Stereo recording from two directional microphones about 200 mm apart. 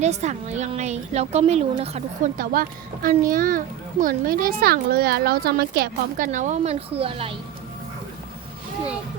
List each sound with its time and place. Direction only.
0.0 s a woman's voice: 35° right (ahead or behind)